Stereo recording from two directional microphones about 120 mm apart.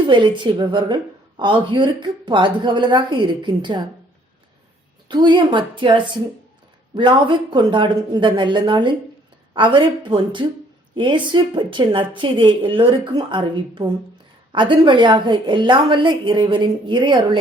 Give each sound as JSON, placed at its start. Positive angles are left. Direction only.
{"t": 0.1, "sound": "a woman's voice", "side_deg": -40}
{"t": 5.0, "sound": "a woman's voice", "side_deg": -40}